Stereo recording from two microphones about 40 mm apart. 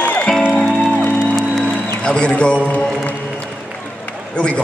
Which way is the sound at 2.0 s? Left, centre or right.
Left.